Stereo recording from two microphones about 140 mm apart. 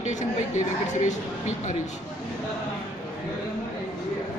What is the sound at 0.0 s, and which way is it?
A woman's voice, 60° left (ahead or behind).